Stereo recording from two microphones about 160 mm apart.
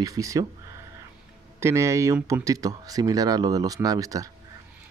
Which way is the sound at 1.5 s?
15° right (ahead or behind).